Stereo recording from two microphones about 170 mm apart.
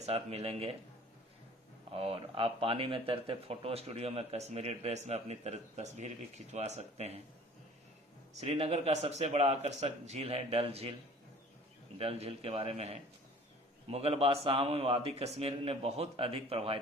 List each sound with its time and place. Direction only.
0.0 s speech: 35° right (ahead or behind)
1.9 s speech: 35° right (ahead or behind)
8.3 s speech: 40° right (ahead or behind)
11.9 s speech: 35° right (ahead or behind)